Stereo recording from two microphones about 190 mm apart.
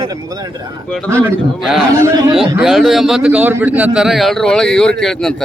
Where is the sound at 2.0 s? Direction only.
20° right (ahead or behind).